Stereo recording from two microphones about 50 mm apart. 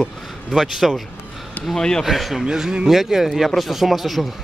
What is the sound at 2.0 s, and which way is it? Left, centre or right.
Speech, centre.